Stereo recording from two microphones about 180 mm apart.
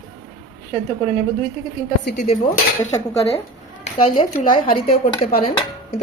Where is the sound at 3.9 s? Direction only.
40° left (ahead or behind).